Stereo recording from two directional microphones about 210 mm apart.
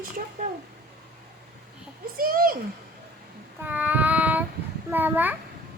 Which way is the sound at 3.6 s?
10° right (ahead or behind).